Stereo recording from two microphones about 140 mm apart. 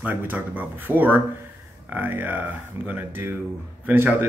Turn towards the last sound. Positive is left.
turn(degrees=-15)  # may be behind; listen again after turning